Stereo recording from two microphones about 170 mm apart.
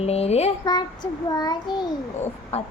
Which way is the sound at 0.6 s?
25° left (ahead or behind).